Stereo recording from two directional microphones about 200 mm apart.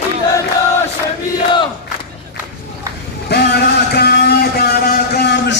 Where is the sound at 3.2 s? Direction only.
55° left (ahead or behind).